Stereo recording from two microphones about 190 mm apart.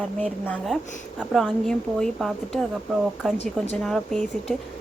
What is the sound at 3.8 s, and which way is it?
Speech, centre (ahead or behind).